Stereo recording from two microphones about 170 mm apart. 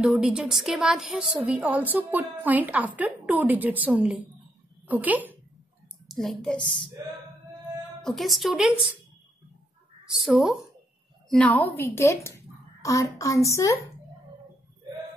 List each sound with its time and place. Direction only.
0.0 s a woman's voice: centre (ahead or behind)
6.0 s a child's voice: centre (ahead or behind)
8.0 s a woman's voice: centre (ahead or behind)
10.1 s a woman's voice: 5° right (ahead or behind); by 13.7 s 20° left (ahead or behind)